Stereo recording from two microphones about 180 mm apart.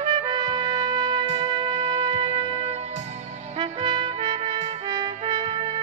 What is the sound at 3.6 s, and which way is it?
Trumpet, 25° right (ahead or behind).